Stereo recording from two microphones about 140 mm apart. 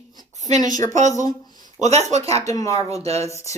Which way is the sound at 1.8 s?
50° right (ahead or behind).